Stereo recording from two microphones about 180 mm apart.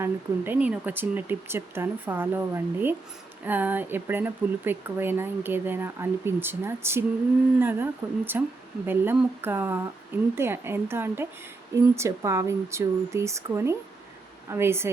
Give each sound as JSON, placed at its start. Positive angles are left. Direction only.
{"t": 0.0, "sound": "speech", "side_deg": -10}